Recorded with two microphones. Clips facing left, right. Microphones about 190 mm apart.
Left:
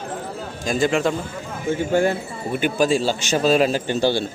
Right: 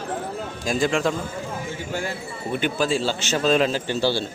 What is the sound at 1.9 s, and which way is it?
Speech, 55° left (ahead or behind).